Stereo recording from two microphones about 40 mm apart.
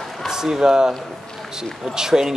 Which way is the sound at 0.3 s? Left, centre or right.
Centre.